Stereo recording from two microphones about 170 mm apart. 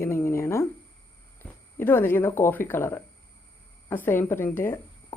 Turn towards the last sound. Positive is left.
turn(degrees=15)  # may be behind; listen again after turning